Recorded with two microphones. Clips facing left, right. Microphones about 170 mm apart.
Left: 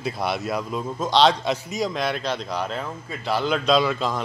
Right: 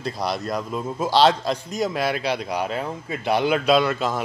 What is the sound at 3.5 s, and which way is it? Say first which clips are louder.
Speech: even; 5° right (ahead or behind).